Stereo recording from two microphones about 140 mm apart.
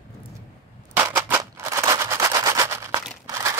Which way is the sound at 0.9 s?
15° right (ahead or behind).